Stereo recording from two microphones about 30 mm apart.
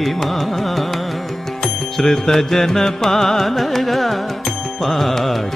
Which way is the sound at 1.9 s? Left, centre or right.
Centre.